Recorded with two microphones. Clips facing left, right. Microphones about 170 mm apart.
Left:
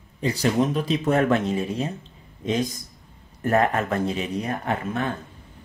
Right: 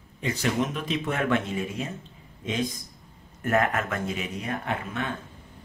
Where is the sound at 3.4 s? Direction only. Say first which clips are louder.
Left 4 dB; 35° left (ahead or behind).